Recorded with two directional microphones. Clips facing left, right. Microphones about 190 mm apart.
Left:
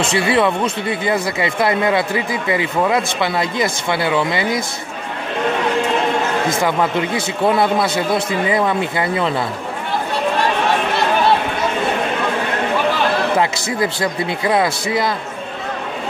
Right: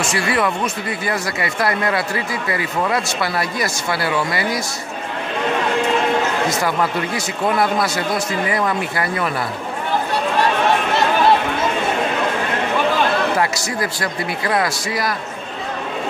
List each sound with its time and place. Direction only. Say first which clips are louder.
0.2 s speech: left 4 dB; 25° left (ahead or behind)
6.8 s speech: left 3 dB; 25° left (ahead or behind)
13.4 s speech: left 2 dB; 20° left (ahead or behind)